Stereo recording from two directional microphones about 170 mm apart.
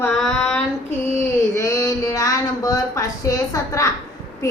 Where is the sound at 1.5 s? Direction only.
15° left (ahead or behind).